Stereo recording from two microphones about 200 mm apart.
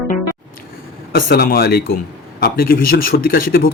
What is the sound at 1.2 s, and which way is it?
Speech, 45° left (ahead or behind).